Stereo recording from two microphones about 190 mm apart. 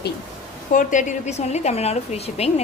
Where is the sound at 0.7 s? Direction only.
45° left (ahead or behind).